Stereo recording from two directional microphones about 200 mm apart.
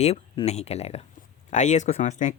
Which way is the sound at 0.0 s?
30° left (ahead or behind).